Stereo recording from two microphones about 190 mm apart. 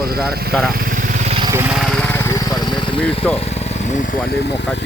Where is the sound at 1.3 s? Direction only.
25° right (ahead or behind).